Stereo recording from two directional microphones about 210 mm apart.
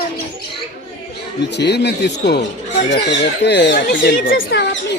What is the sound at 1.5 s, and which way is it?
Speech, 55° left (ahead or behind).